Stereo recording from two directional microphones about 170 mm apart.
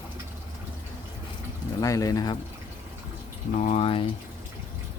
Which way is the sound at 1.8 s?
20° left (ahead or behind).